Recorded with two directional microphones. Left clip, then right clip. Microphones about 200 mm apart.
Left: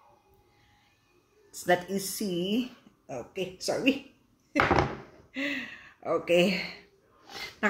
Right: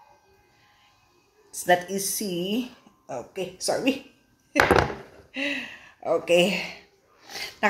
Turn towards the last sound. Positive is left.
turn(degrees=20)  # may be behind; listen again after turning